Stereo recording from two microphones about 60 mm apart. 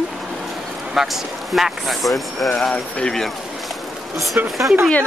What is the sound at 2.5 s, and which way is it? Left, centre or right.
Speech, centre.